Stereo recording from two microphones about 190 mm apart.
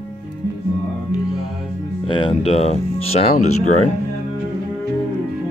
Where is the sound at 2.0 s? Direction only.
25° left (ahead or behind).